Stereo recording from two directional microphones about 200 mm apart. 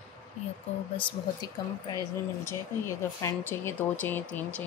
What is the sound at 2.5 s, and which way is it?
Speech, 15° left (ahead or behind).